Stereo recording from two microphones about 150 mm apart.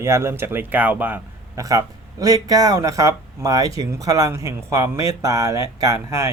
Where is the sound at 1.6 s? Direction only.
25° right (ahead or behind).